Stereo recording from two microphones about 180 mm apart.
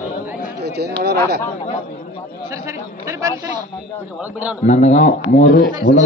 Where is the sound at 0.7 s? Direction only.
65° right (ahead or behind).